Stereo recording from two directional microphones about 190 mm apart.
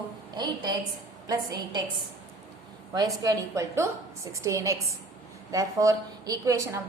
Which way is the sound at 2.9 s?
20° right (ahead or behind).